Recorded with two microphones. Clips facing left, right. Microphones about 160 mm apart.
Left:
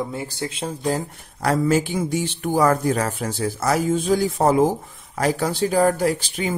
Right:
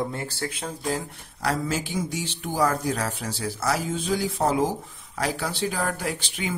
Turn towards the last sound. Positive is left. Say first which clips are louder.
# left 8 dB
turn(degrees=40)  # may be behind; listen again after turning